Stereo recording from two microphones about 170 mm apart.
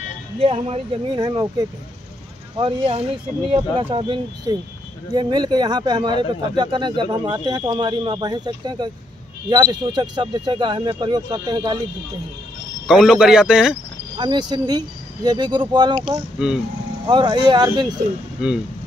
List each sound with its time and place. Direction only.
0.4 s speech: 35° right (ahead or behind)
12.8 s speech: centre (ahead or behind)
14.1 s speech: 25° right (ahead or behind)
16.4 s speech: 5° right (ahead or behind)
17.0 s speech: 25° right (ahead or behind)